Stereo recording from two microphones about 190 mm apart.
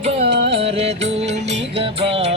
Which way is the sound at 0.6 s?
35° right (ahead or behind).